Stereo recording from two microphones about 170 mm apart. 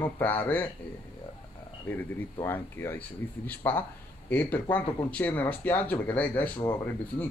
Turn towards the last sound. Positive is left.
turn(degrees=10)  # may be behind; listen again after turning